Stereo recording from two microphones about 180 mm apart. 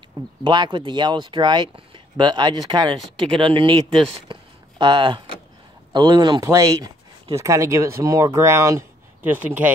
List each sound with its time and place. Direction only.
0.4 s speech: 25° right (ahead or behind)
4.1 s a sound: 25° right (ahead or behind)
5.9 s speech: 25° right (ahead or behind); by 9.7 s 10° right (ahead or behind)